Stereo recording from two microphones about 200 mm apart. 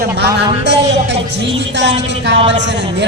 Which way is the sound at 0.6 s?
60° right (ahead or behind).